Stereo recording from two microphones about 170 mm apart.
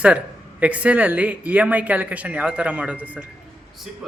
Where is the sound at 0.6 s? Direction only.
10° right (ahead or behind).